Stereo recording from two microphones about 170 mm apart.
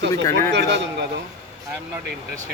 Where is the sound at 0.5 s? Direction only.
90° right.